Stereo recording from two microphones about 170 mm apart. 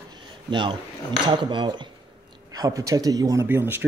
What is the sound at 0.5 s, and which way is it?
Speech, 30° right (ahead or behind).